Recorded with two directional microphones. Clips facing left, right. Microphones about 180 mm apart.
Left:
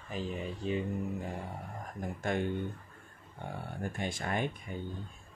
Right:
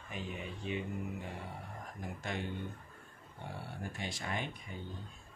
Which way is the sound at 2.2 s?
50° left (ahead or behind).